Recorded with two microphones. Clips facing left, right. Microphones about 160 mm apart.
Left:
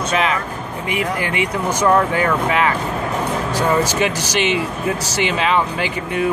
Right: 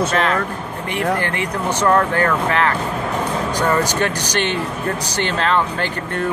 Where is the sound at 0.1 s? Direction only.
5° left (ahead or behind).